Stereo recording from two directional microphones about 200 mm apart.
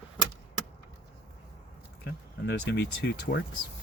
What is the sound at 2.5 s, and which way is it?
Speech, 60° left (ahead or behind).